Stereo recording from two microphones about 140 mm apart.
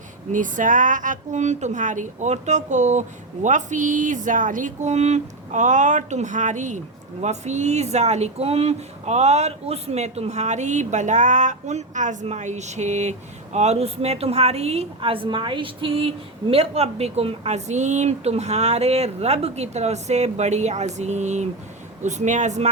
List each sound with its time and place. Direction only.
0.3 s speech: 65° right (ahead or behind)